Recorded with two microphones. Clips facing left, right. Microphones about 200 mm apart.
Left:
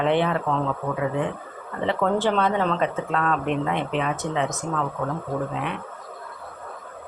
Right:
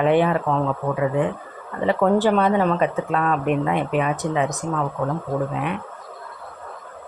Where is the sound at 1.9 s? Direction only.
10° right (ahead or behind).